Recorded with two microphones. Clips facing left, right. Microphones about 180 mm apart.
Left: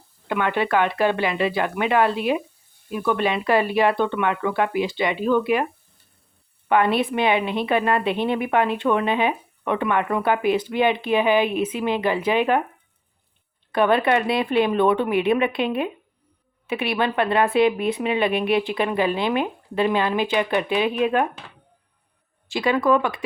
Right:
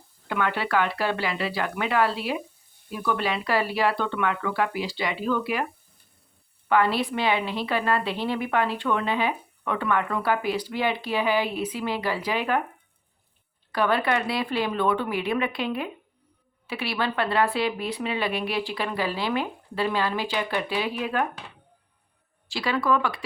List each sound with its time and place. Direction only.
0.3 s a woman's voice: 20° left (ahead or behind)
6.7 s a woman's voice: 20° left (ahead or behind)
13.7 s a woman's voice: 25° left (ahead or behind)
22.4 s a woman's voice: 20° left (ahead or behind)